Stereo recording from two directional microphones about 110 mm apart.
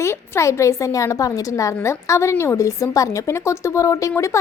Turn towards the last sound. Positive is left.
turn(degrees=30)  # may be behind; listen again after turning